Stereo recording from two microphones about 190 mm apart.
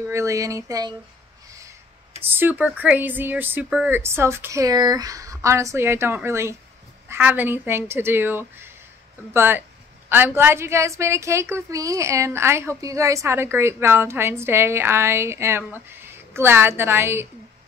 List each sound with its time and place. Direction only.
0.1 s a woman's voice: 15° right (ahead or behind)
2.3 s a woman's voice: 10° right (ahead or behind)